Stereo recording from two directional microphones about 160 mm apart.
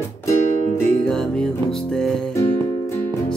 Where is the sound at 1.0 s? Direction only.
5° left (ahead or behind).